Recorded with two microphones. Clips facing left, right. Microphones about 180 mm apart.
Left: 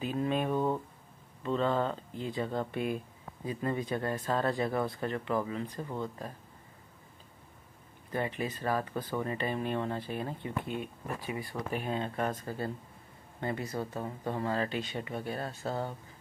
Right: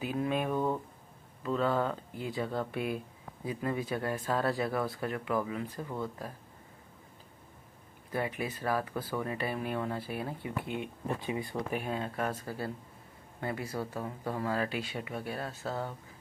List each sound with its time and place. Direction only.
0.0 s a sound: 10° right (ahead or behind)
2.7 s speech: 5° right (ahead or behind)
8.1 s speech: 10° right (ahead or behind)
10.8 s speech: 20° right (ahead or behind)
11.7 s speech: 5° right (ahead or behind)